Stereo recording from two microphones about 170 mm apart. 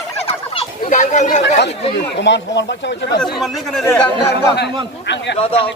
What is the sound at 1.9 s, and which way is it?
Speech, 90° left.